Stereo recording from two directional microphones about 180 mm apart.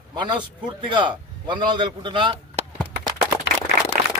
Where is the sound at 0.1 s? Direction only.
25° right (ahead or behind).